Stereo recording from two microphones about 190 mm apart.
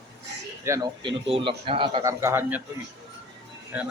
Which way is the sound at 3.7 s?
5° right (ahead or behind).